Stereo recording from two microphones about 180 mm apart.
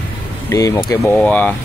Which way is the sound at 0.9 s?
10° left (ahead or behind).